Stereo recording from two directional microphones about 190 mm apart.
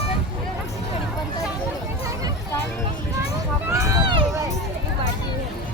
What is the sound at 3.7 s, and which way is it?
Run, 15° right (ahead or behind).